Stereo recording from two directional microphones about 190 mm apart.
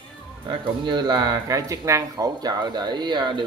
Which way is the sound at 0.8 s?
25° right (ahead or behind).